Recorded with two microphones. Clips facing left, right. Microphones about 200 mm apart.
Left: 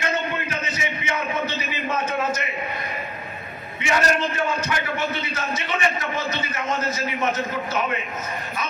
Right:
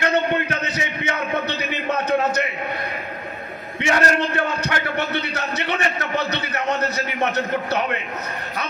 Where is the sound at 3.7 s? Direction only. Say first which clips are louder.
Right 2 dB; 65° right (ahead or behind).